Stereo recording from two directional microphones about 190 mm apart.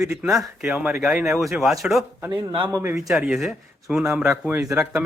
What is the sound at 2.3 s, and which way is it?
Speech, 25° right (ahead or behind).